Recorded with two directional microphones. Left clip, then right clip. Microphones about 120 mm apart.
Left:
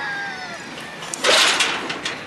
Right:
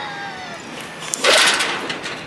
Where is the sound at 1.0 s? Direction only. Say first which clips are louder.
Right 2 dB; 25° right (ahead or behind).